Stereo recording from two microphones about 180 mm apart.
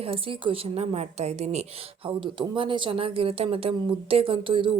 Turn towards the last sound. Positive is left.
turn(degrees=-30)  # may be behind; listen again after turning